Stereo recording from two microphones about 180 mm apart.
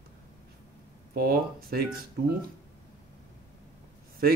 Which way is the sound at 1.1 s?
55° right (ahead or behind).